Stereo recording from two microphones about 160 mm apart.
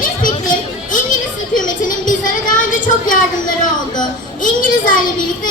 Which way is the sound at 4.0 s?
55° left (ahead or behind).